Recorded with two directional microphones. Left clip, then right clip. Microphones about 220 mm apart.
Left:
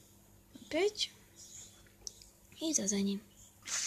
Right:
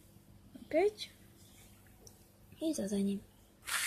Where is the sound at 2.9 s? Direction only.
Centre (ahead or behind).